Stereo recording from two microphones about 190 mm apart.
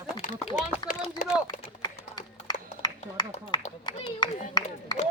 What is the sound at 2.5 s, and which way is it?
A man's voice, 20° left (ahead or behind).